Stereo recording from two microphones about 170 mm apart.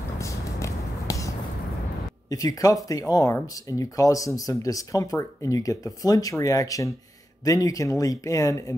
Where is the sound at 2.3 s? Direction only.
20° left (ahead or behind).